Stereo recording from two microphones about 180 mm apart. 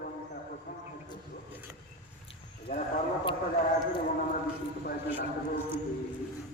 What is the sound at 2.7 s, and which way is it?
Speech, 35° left (ahead or behind).